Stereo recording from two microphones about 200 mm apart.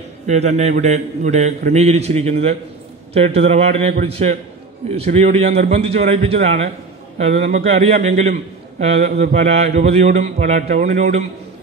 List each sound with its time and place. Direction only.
0.3 s a man's voice: 35° right (ahead or behind)